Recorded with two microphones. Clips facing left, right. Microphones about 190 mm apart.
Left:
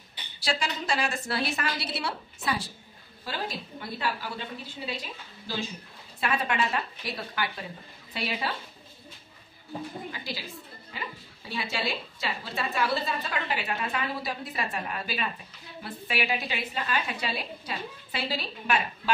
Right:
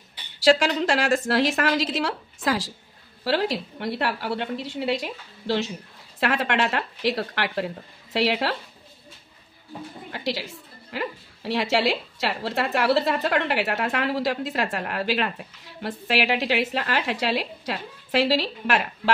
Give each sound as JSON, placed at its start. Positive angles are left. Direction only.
{"t": 0.4, "sound": "a woman's voice", "side_deg": -90}
{"t": 10.1, "sound": "a woman's voice", "side_deg": -75}